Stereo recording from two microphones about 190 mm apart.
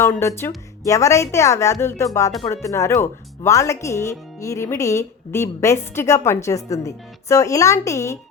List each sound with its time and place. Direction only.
0.0 s speech: 15° left (ahead or behind)